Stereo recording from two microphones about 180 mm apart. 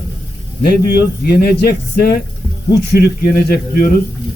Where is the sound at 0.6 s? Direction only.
60° left (ahead or behind).